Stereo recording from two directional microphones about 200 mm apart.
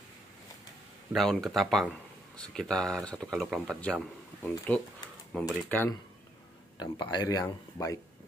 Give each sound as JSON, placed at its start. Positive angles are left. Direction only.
{"t": 1.1, "sound": "speech", "side_deg": 0}
{"t": 6.8, "sound": "speech", "side_deg": 20}